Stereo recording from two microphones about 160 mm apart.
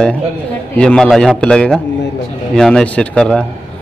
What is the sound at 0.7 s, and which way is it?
A man's voice, 5° left (ahead or behind).